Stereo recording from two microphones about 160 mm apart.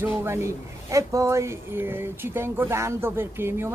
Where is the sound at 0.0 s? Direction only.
15° right (ahead or behind).